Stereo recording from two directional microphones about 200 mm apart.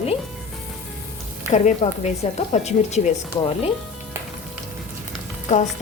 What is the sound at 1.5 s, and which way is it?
A woman's voice, 35° left (ahead or behind).